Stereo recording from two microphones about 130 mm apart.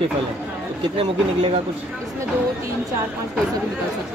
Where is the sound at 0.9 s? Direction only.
45° right (ahead or behind).